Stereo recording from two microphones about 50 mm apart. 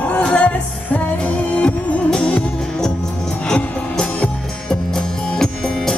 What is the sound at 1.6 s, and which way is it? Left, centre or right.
Music, left.